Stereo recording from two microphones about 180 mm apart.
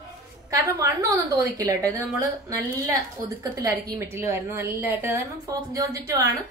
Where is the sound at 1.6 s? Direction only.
20° right (ahead or behind).